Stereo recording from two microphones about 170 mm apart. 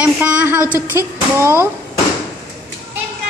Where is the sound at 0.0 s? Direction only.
10° right (ahead or behind).